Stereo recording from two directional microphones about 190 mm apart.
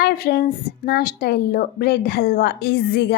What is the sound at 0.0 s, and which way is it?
Speech, 55° left (ahead or behind).